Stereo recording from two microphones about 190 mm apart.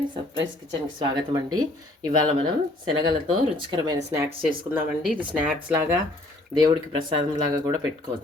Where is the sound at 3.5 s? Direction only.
25° right (ahead or behind).